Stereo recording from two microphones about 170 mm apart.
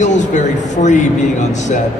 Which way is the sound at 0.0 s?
45° left (ahead or behind).